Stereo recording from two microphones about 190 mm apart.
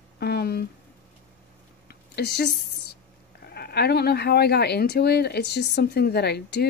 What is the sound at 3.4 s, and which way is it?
Speech, 55° left (ahead or behind).